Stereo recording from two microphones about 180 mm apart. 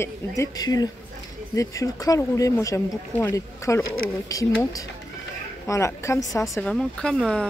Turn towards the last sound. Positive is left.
turn(degrees=5)  # may be behind; listen again after turning